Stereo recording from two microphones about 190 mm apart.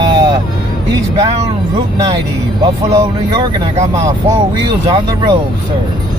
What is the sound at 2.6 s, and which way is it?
Speech, 25° right (ahead or behind).